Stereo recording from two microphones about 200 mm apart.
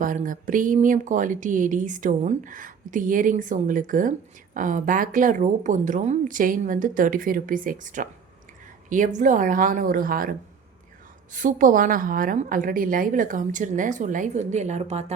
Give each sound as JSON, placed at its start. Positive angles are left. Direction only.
{"t": 0.0, "sound": "speech", "side_deg": -40}